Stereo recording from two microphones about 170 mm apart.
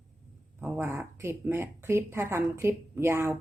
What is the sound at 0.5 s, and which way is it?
Speech, 10° right (ahead or behind).